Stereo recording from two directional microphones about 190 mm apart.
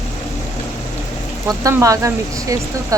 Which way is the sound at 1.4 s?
15° right (ahead or behind).